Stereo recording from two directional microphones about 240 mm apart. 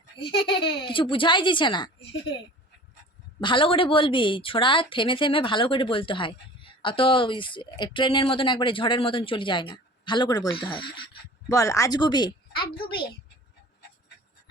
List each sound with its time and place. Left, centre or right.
0.2 s a woman's voice: left
3.4 s a woman's voice: left